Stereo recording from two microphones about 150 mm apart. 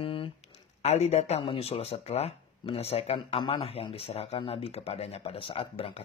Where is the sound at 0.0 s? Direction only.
35° left (ahead or behind).